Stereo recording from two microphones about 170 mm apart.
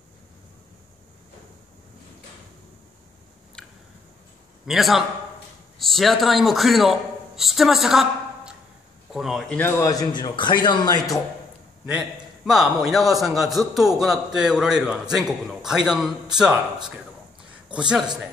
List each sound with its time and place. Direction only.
3.6 s a sound: 5° left (ahead or behind)
4.6 s a man's voice: centre (ahead or behind); by 11.0 s 25° left (ahead or behind)
11.8 s a man's voice: 5° right (ahead or behind)
17.7 s a man's voice: 5° right (ahead or behind)